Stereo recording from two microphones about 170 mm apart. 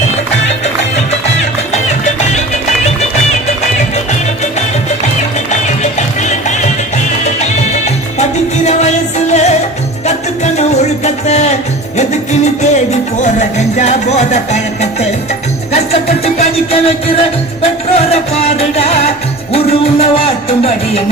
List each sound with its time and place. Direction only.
1.7 s music: 40° left (ahead or behind)
5.1 s music: 45° left (ahead or behind)